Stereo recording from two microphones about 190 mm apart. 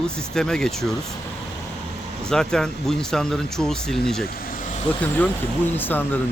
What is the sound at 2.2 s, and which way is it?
Speech, 5° left (ahead or behind).